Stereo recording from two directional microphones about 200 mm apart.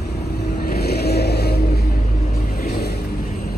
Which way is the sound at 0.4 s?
50° left (ahead or behind).